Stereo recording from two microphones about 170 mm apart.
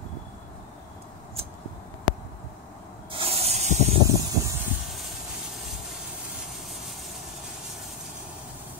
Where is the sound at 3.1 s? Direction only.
35° right (ahead or behind).